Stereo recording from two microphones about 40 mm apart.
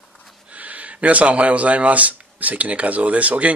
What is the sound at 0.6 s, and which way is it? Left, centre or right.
Speech, right.